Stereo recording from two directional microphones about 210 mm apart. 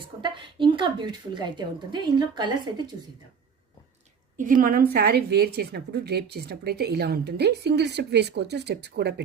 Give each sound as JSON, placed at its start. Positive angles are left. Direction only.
{"t": 0.0, "sound": "a woman's voice", "side_deg": -25}
{"t": 4.4, "sound": "a woman's voice", "side_deg": -40}